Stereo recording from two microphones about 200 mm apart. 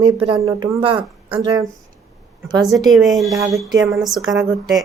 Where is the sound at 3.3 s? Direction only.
15° right (ahead or behind).